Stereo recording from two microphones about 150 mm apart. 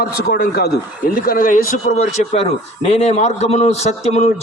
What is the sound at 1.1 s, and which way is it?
A man's voice, 70° left (ahead or behind).